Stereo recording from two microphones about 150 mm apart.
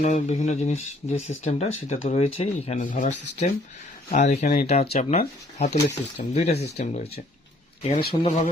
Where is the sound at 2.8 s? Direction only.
60° left (ahead or behind).